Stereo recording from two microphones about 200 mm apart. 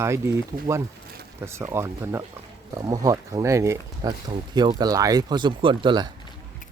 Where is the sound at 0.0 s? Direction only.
15° right (ahead or behind).